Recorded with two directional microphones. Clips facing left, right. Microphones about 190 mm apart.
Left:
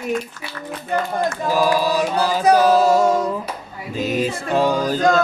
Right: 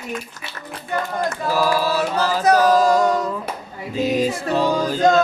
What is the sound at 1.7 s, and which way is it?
Music, 15° left (ahead or behind).